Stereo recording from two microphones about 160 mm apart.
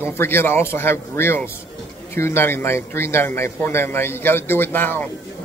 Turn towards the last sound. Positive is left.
turn(degrees=10)  # may be behind; listen again after turning